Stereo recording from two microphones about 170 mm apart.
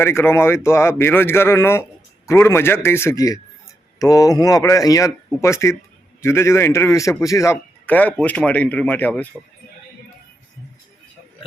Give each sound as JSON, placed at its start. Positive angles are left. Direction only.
{"t": 0.0, "sound": "a man's voice", "side_deg": 15}